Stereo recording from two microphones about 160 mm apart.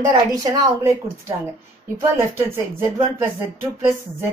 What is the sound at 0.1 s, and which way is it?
A woman's voice, 25° right (ahead or behind).